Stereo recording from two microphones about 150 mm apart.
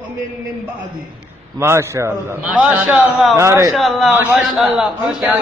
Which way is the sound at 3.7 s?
Centre (ahead or behind).